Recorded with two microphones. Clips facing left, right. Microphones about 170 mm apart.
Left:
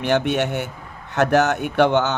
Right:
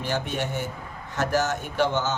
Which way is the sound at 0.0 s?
75° left (ahead or behind).